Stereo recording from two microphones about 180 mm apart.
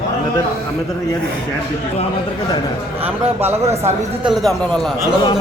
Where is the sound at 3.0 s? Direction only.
10° right (ahead or behind).